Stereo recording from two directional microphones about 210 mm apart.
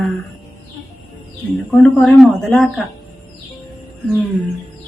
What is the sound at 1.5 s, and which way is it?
Speech, 5° left (ahead or behind).